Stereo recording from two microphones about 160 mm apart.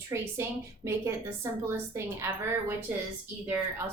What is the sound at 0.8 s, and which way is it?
A woman's voice, 15° right (ahead or behind).